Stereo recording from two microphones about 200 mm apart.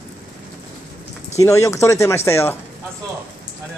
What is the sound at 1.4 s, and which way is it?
Speech, 15° left (ahead or behind).